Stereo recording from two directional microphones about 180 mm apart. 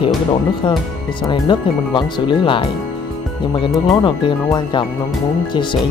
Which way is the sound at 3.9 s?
25° left (ahead or behind).